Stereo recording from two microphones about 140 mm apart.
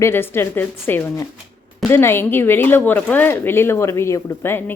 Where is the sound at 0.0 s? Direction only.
15° left (ahead or behind).